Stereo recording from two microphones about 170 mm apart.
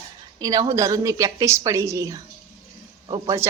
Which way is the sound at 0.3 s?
20° right (ahead or behind).